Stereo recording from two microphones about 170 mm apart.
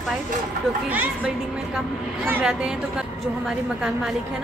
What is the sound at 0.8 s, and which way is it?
A woman's voice, 10° right (ahead or behind).